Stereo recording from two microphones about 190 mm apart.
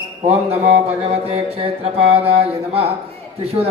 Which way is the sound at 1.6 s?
30° right (ahead or behind).